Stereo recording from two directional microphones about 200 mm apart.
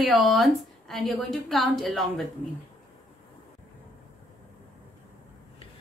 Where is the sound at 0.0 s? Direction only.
Centre (ahead or behind).